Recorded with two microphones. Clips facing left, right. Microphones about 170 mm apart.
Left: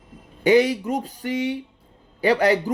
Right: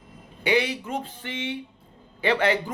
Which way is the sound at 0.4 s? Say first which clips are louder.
Left 7 dB; 40° left (ahead or behind).